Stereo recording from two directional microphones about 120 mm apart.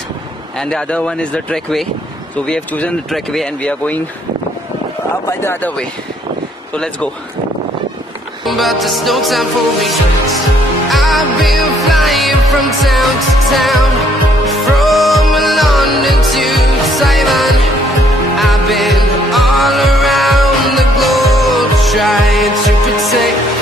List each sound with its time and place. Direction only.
0.6 s speech: 5° left (ahead or behind)
5.4 s speech: 20° left (ahead or behind)
8.5 s music: centre (ahead or behind)